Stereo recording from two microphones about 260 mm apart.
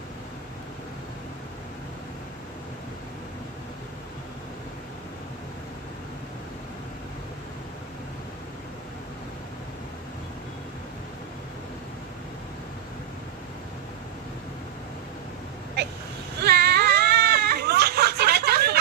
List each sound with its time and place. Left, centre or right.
16.3 s baby cry: right